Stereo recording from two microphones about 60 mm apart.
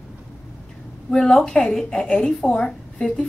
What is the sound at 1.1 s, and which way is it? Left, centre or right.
A woman's voice, centre.